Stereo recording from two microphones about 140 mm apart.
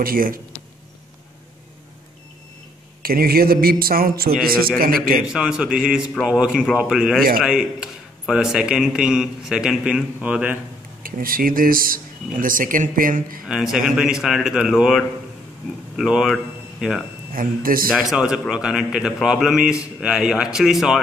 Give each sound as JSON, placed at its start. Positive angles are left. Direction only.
{"t": 0.0, "sound": "speech", "side_deg": -85}
{"t": 3.0, "sound": "speech", "side_deg": -90}
{"t": 5.2, "sound": "a man's voice", "side_deg": -5}
{"t": 11.0, "sound": "speech", "side_deg": -90}
{"t": 13.5, "sound": "a man's voice", "side_deg": 0}
{"t": 17.3, "sound": "speech", "side_deg": -90}
{"t": 17.9, "sound": "a man's voice", "side_deg": -5}